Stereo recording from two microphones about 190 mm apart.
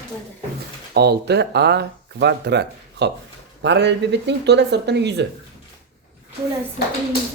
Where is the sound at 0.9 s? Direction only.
60° right (ahead or behind).